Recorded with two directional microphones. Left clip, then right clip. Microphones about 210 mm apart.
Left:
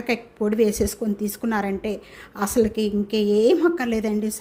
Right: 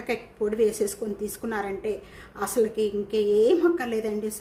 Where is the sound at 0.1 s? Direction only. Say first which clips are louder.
Left 3 dB; 40° left (ahead or behind).